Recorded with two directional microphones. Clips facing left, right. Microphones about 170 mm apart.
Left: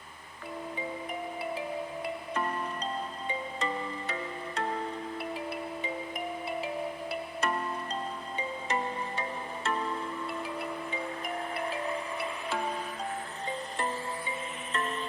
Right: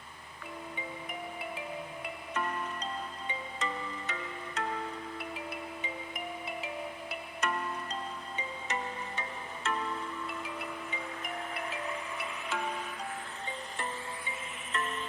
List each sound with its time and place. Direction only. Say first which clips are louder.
2.3 s music: even; 35° left (ahead or behind)